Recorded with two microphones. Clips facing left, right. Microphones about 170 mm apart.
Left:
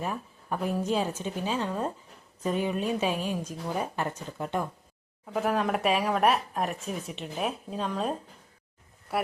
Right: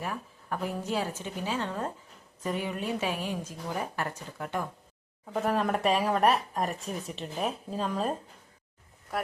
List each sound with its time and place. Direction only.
0.0 s a woman's voice: 20° left (ahead or behind)
5.2 s speech: centre (ahead or behind)